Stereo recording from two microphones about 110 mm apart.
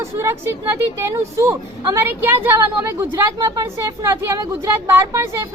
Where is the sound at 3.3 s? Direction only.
35° right (ahead or behind).